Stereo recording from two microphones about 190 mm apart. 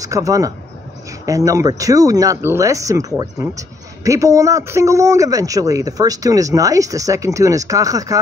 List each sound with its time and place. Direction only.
0.0 s a man's voice: 15° right (ahead or behind)